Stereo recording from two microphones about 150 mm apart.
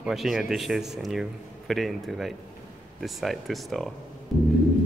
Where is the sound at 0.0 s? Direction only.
Centre (ahead or behind).